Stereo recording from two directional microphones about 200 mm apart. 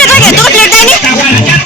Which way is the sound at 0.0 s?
5° left (ahead or behind).